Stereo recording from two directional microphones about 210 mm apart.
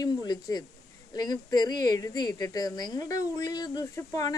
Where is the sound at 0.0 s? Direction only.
20° left (ahead or behind).